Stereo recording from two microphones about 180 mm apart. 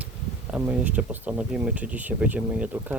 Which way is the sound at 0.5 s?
10° right (ahead or behind).